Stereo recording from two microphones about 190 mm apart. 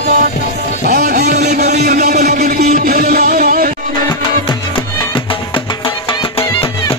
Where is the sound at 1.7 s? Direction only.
40° right (ahead or behind).